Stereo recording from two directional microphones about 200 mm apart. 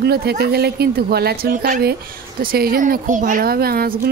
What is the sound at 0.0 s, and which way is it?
A woman's voice, 50° right (ahead or behind).